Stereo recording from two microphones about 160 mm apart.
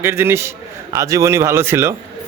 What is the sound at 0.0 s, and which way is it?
A man's voice, 15° right (ahead or behind).